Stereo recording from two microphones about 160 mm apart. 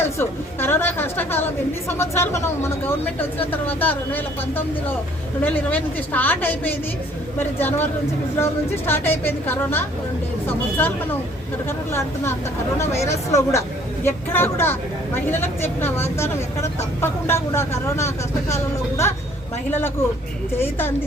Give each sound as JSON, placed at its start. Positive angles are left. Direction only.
{"t": 0.2, "sound": "speech", "side_deg": 15}